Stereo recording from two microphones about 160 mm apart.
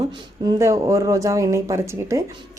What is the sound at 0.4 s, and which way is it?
Speech, 20° right (ahead or behind).